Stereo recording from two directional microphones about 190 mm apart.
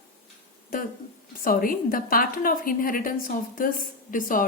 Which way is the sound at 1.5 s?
50° left (ahead or behind).